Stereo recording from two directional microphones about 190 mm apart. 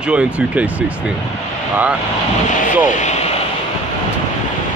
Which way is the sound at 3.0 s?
35° left (ahead or behind).